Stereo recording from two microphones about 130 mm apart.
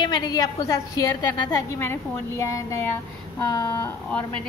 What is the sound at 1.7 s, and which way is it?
Speech, 20° left (ahead or behind).